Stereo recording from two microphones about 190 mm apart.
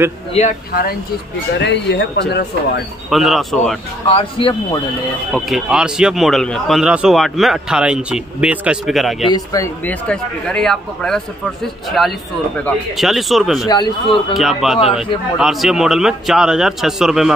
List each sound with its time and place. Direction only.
0.3 s speech: 35° left (ahead or behind)
1.5 s speech: 65° left (ahead or behind)
3.1 s speech: centre (ahead or behind)
4.1 s speech: 25° left (ahead or behind)
5.3 s speech: centre (ahead or behind)
9.3 s speech: 15° left (ahead or behind); by 13.7 s centre (ahead or behind)
13.7 s speech: 20° left (ahead or behind)
14.3 s speech: centre (ahead or behind)